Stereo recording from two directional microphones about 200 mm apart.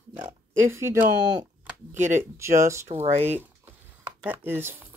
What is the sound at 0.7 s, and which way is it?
Speech, 15° right (ahead or behind).